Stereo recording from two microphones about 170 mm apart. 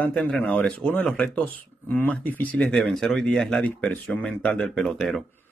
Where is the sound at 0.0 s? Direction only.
5° left (ahead or behind).